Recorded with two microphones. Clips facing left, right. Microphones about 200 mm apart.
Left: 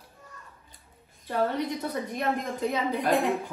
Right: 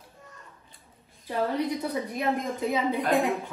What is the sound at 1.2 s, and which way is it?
A woman's voice, centre (ahead or behind).